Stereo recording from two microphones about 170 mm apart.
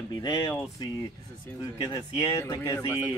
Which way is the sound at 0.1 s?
25° left (ahead or behind).